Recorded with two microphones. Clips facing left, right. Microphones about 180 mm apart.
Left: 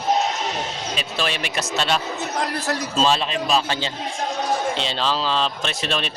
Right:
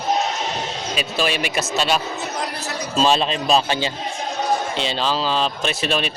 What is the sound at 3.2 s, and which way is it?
Speech, 25° right (ahead or behind).